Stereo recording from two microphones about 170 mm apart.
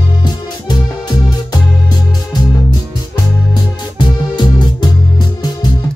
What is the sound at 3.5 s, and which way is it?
Music, 25° left (ahead or behind).